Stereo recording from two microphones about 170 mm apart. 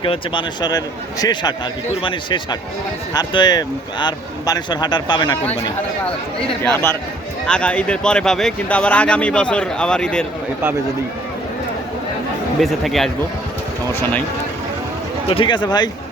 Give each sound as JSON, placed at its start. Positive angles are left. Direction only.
{"t": 0.0, "sound": "speech", "side_deg": 30}
{"t": 6.6, "sound": "speech", "side_deg": 15}
{"t": 12.5, "sound": "speech", "side_deg": 0}
{"t": 15.3, "sound": "speech", "side_deg": 30}